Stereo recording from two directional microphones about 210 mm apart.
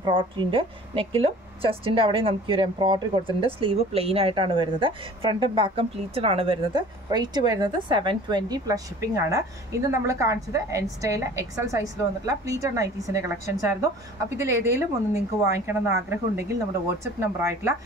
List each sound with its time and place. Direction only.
0.0 s a woman's voice: 25° right (ahead or behind)